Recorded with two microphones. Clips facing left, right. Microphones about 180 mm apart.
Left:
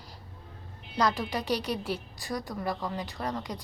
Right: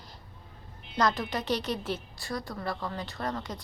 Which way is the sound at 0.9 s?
10° left (ahead or behind).